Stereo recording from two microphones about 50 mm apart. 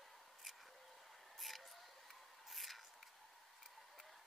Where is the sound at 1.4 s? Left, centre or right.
Centre.